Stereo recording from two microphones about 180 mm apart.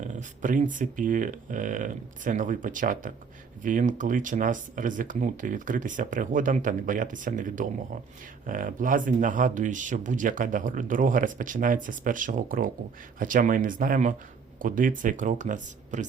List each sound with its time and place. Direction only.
0.0 s speech: 45° right (ahead or behind)